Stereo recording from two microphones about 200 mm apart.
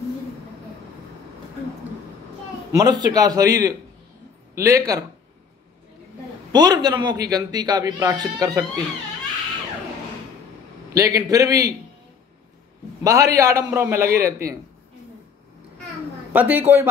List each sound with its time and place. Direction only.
2.7 s speech: 15° right (ahead or behind)
6.5 s a man's voice: 20° right (ahead or behind)
10.9 s speech: 15° right (ahead or behind)
13.0 s speech: 15° right (ahead or behind)
16.3 s speech: 10° right (ahead or behind)